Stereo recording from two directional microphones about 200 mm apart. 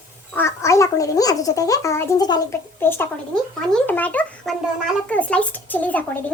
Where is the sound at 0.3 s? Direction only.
15° left (ahead or behind).